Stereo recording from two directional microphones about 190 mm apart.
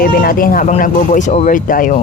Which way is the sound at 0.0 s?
50° left (ahead or behind).